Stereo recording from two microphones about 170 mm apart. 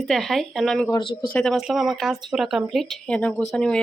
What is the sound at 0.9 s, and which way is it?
Speech, 30° left (ahead or behind).